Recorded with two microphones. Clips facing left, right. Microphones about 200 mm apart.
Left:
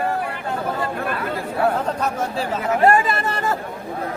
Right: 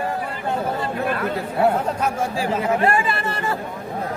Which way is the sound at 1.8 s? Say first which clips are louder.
Even; 10° right (ahead or behind).